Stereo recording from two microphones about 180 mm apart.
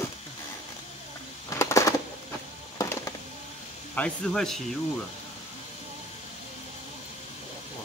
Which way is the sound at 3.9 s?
5° left (ahead or behind).